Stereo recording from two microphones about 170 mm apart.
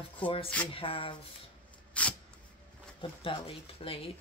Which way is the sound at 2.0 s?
5° left (ahead or behind).